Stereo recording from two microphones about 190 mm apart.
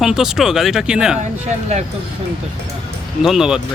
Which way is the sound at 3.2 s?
Centre (ahead or behind).